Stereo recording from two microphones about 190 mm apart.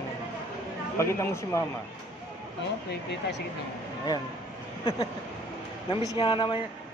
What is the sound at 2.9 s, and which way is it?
Speech, 65° left (ahead or behind).